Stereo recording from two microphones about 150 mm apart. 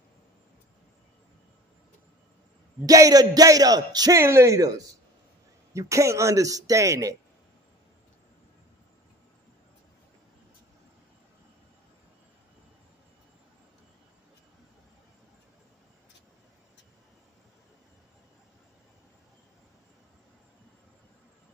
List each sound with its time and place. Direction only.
2.9 s a man's voice: 25° right (ahead or behind)